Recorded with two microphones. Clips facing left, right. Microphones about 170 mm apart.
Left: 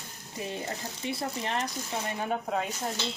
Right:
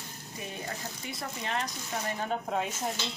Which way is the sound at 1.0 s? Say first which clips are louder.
Left 7 dB; 30° left (ahead or behind).